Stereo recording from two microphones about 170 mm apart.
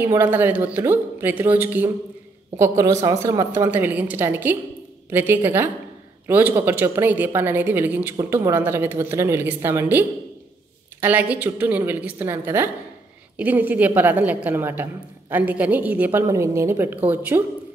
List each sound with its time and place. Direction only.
0.0 s a woman's voice: 10° right (ahead or behind)